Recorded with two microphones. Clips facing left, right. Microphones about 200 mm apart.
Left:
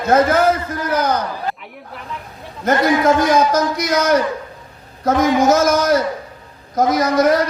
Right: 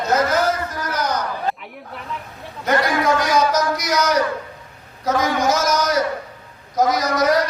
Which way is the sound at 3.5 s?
55° left (ahead or behind).